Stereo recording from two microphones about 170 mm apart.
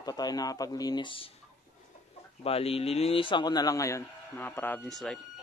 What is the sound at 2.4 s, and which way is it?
A man's voice, 35° left (ahead or behind).